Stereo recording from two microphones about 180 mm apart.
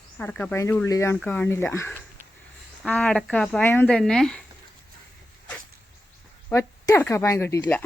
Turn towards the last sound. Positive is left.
turn(degrees=15)  # may be behind; listen again after turning